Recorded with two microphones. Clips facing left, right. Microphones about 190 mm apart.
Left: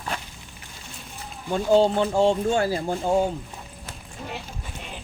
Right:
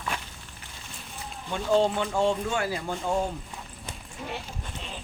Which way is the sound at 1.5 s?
35° left (ahead or behind).